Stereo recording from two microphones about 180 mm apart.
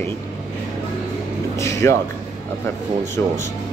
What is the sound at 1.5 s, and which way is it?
Speech, 15° left (ahead or behind).